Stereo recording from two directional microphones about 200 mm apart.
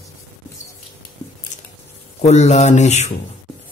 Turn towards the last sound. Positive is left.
turn(degrees=35)  # may be behind; listen again after turning